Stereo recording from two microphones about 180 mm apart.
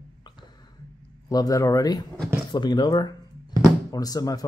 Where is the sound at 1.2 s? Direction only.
20° left (ahead or behind).